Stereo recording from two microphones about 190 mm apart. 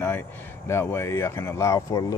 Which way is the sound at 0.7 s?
15° left (ahead or behind).